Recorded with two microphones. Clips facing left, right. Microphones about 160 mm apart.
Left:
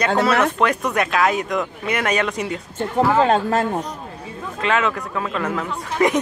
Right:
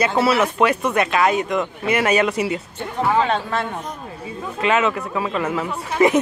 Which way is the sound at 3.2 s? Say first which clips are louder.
Left 3 dB; 40° left (ahead or behind).